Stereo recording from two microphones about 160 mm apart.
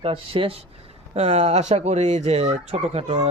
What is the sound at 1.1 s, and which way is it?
Speech, 45° right (ahead or behind).